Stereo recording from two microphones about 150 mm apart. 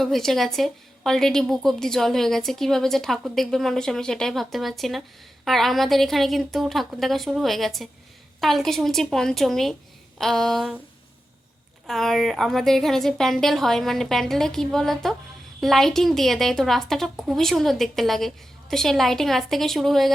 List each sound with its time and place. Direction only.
0.0 s a woman's voice: centre (ahead or behind)
11.9 s a woman's voice: centre (ahead or behind)